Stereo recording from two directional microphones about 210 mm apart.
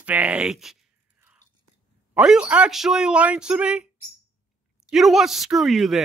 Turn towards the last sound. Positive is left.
turn(degrees=0)  # may be behind; listen again after turning